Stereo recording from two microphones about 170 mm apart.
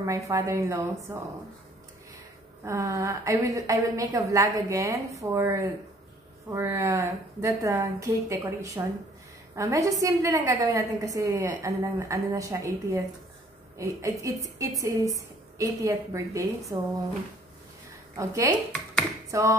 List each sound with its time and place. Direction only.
0.0 s a woman's voice: 20° right (ahead or behind)
2.6 s a woman's voice: 20° right (ahead or behind)
18.1 s a woman's voice: 20° right (ahead or behind)